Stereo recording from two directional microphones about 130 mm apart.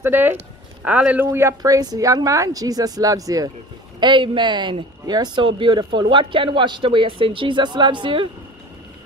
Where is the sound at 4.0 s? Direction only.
40° right (ahead or behind).